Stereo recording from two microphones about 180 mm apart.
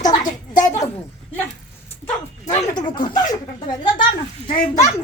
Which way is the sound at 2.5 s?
25° left (ahead or behind).